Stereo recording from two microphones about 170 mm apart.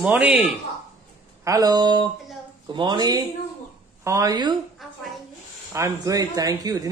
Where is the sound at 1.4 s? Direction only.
20° right (ahead or behind).